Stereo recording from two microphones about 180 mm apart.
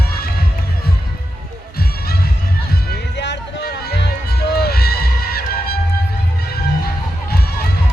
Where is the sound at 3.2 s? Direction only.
75° left (ahead or behind); by 5.4 s 60° left (ahead or behind).